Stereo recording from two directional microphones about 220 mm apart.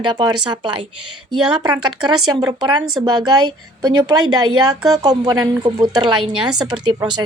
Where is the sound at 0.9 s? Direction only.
90° right.